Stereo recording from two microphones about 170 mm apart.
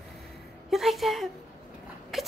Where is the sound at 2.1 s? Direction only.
Centre (ahead or behind).